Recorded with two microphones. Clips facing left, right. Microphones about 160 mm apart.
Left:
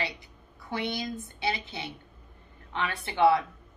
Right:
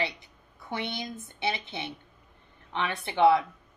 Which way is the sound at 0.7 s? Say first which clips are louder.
Left 2 dB; 20° right (ahead or behind).